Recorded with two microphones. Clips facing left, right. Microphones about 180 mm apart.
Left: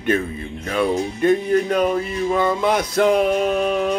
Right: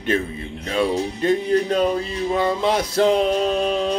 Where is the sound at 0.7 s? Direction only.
25° right (ahead or behind).